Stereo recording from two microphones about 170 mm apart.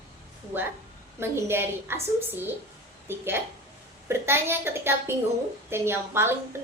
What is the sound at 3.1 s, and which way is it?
A woman's voice, 15° right (ahead or behind).